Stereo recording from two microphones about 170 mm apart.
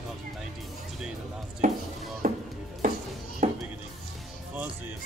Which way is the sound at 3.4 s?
50° right (ahead or behind).